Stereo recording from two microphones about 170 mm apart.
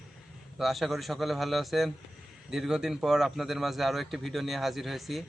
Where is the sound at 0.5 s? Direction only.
Centre (ahead or behind).